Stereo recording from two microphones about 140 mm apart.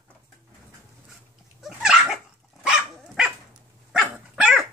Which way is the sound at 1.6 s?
5° right (ahead or behind).